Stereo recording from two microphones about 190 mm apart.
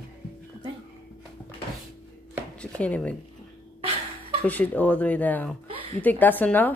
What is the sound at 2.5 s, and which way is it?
Chopping, 5° left (ahead or behind).